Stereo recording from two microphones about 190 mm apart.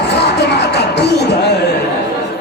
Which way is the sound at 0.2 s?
60° left (ahead or behind).